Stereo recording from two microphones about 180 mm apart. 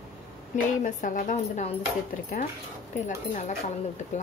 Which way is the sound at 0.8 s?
45° left (ahead or behind).